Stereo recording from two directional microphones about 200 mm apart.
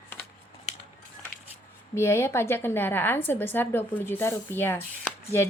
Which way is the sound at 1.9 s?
15° left (ahead or behind).